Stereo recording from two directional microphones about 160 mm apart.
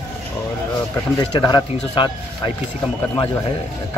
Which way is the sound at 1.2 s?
25° left (ahead or behind).